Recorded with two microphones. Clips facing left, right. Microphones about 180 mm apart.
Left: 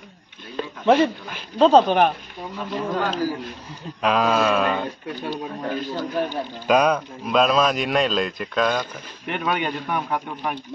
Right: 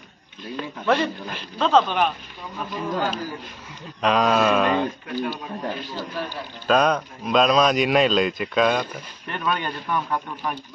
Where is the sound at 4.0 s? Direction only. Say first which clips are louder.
Even; 5° left (ahead or behind).